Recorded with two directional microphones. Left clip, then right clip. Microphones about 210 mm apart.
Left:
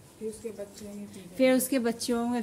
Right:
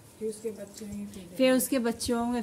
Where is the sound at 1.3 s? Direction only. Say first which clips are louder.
Even; 10° right (ahead or behind).